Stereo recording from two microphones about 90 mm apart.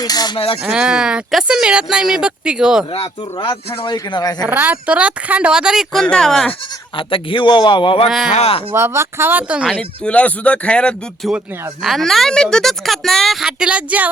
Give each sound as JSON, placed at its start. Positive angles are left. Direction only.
{"t": 0.0, "sound": "speech", "side_deg": 45}
{"t": 0.3, "sound": "speech", "side_deg": 90}
{"t": 0.7, "sound": "speech", "side_deg": -10}
{"t": 2.9, "sound": "a man's voice", "side_deg": 85}
{"t": 4.1, "sound": "speech", "side_deg": 50}
{"t": 4.4, "sound": "speech", "side_deg": -20}
{"t": 5.9, "sound": "speech", "side_deg": 5}
{"t": 6.9, "sound": "a man's voice", "side_deg": 75}
{"t": 8.0, "sound": "speech", "side_deg": -5}
{"t": 8.7, "sound": "speech", "side_deg": -30}
{"t": 9.7, "sound": "speech", "side_deg": 10}